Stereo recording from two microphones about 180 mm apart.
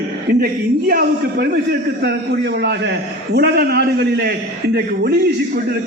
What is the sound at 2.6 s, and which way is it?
A man's voice, 65° right (ahead or behind).